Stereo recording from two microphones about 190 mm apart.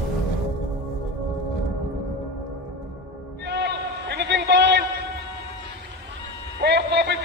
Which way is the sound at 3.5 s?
60° right (ahead or behind).